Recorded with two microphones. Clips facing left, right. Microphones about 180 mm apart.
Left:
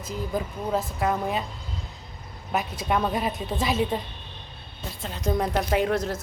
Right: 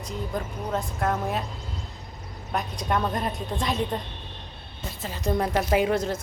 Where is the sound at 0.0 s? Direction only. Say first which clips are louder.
Left 2 dB; 5° left (ahead or behind).